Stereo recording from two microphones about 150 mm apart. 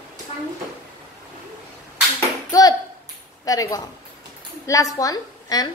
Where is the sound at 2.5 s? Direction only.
25° left (ahead or behind).